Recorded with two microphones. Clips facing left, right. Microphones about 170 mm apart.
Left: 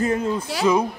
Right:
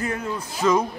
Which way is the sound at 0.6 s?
10° left (ahead or behind).